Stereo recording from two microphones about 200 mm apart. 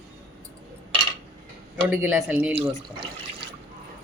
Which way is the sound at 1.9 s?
5° right (ahead or behind).